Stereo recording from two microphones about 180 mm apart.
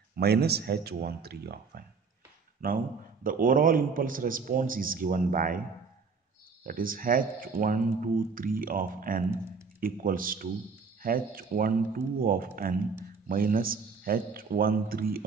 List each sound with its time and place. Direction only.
0.1 s speech: 60° right (ahead or behind)
3.3 s speech: 50° right (ahead or behind)
6.6 s speech: 50° right (ahead or behind)